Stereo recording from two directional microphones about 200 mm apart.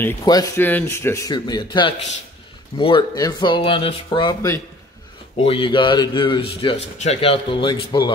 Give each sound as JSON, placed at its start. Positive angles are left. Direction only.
{"t": 0.0, "sound": "a man's voice", "side_deg": 20}